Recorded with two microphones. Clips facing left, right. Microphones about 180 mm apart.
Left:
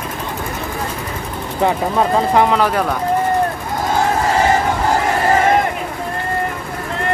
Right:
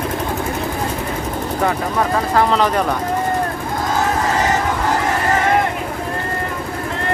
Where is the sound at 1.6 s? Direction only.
20° left (ahead or behind); by 3.0 s 5° left (ahead or behind).